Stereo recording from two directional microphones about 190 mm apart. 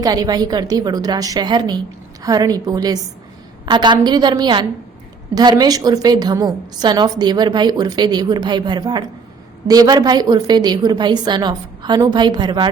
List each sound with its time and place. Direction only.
0.0 s a woman's voice: 20° right (ahead or behind)